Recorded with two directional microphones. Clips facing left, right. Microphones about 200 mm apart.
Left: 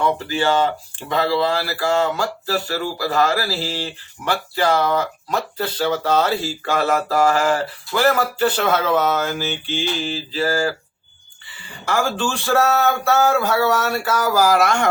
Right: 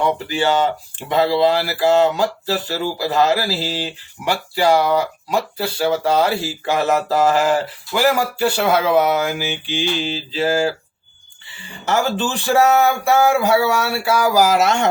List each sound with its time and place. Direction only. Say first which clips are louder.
0.0 s speech: right 1 dB; 20° right (ahead or behind)